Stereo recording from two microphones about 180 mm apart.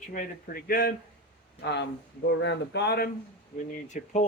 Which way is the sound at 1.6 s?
70° left (ahead or behind).